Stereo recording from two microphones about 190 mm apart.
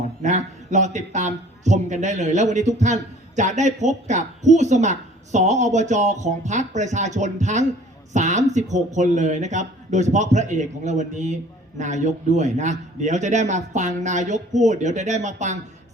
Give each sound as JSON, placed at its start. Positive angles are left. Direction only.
{"t": 0.2, "sound": "a man's voice", "side_deg": -40}